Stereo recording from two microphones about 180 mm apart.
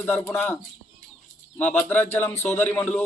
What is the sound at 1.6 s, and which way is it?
A man's voice, 10° left (ahead or behind).